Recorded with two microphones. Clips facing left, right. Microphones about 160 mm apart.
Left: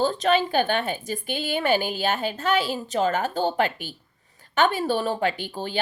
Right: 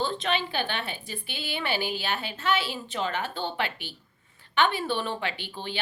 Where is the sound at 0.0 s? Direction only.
40° left (ahead or behind).